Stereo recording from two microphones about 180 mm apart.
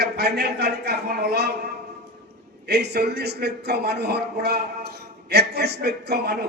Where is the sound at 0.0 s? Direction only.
65° right (ahead or behind).